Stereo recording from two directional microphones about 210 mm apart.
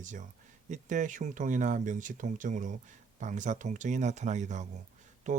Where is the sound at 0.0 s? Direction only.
35° right (ahead or behind).